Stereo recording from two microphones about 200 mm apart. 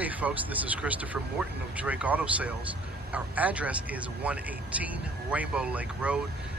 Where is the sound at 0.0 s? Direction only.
10° right (ahead or behind).